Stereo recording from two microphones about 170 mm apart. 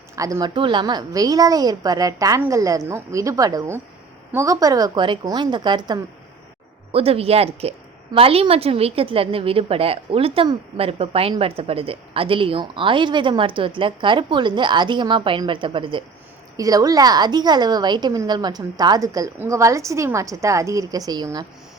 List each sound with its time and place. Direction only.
0.2 s a woman's voice: 20° right (ahead or behind)